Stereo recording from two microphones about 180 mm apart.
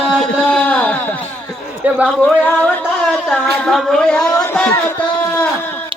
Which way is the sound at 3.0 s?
5° left (ahead or behind).